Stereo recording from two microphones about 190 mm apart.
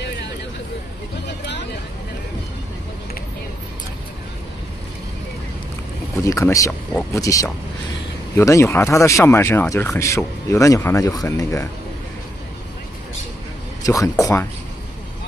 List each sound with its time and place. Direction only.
6.2 s speech: 15° left (ahead or behind)
13.8 s speech: 15° left (ahead or behind)